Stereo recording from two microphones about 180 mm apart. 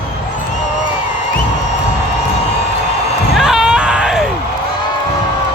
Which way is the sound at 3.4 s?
Centre (ahead or behind).